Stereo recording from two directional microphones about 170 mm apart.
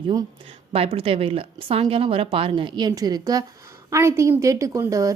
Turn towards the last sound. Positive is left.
turn(degrees=-20)  # may be behind; listen again after turning